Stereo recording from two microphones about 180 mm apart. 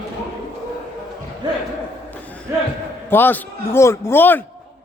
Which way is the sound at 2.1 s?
10° left (ahead or behind).